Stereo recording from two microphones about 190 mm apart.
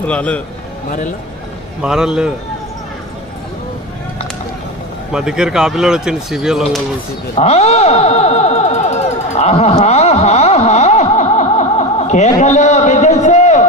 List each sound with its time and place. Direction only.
0.0 s a man's voice: 5° left (ahead or behind)
0.9 s speech: 40° left (ahead or behind)
1.8 s speech: 5° right (ahead or behind)
5.1 s speech: 5° right (ahead or behind)
7.3 s a sound: 35° left (ahead or behind)